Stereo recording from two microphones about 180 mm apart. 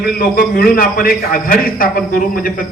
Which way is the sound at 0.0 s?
55° left (ahead or behind).